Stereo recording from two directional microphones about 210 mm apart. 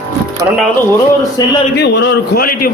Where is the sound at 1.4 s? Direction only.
20° left (ahead or behind).